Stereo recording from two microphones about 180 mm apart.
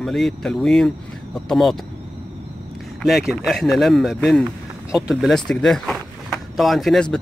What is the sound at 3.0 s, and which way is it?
Speech, centre (ahead or behind).